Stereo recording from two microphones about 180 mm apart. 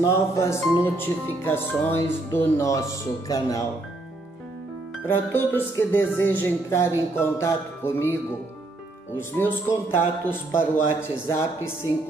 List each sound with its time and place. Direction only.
0.0 s speech: 15° left (ahead or behind)
5.0 s speech: 10° left (ahead or behind)